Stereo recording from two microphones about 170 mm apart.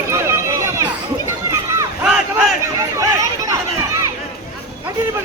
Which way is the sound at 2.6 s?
20° right (ahead or behind).